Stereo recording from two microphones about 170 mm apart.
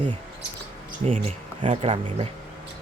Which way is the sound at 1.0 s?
35° right (ahead or behind).